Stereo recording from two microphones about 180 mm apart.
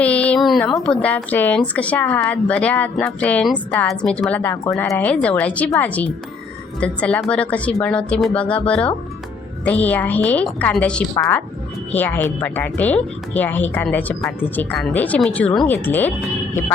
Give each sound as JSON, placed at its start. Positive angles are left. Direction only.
{"t": 0.0, "sound": "a woman's voice", "side_deg": 5}
{"t": 11.1, "sound": "a woman's voice", "side_deg": 20}